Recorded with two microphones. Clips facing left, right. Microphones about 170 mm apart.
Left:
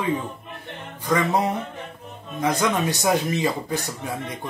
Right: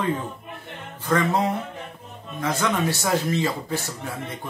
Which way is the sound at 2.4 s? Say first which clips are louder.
Left 2 dB; 15° left (ahead or behind).